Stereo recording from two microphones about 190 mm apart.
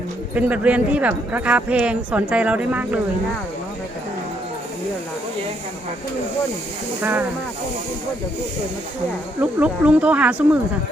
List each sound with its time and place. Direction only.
0.3 s speech: 5° right (ahead or behind)
7.0 s speech: 10° right (ahead or behind)
9.4 s speech: 5° right (ahead or behind)